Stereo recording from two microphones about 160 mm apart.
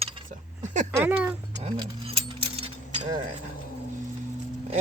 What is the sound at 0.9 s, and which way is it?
Speech, 10° right (ahead or behind).